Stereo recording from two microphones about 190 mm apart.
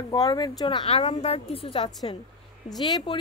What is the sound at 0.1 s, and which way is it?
Speech, 20° left (ahead or behind).